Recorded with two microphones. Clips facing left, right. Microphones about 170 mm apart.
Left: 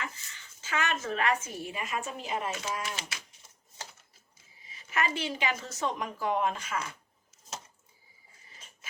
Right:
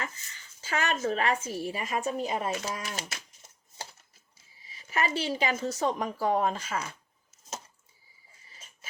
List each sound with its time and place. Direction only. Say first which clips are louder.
0.6 s a woman's voice: right 3 dB; 35° right (ahead or behind)
4.9 s a woman's voice: right 2 dB; 35° right (ahead or behind)